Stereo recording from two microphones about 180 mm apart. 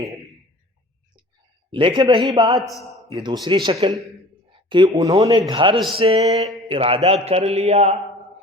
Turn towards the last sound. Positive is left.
turn(degrees=-35)  # may be behind; listen again after turning